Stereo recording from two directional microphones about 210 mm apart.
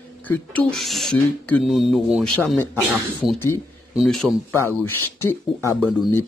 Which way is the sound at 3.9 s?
Centre (ahead or behind).